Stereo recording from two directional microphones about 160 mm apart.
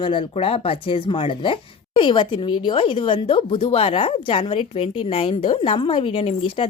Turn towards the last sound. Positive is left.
turn(degrees=35)  # may be behind; listen again after turning